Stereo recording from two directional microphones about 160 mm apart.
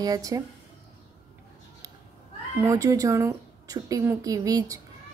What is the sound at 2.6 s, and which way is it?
A woman's voice, 20° right (ahead or behind).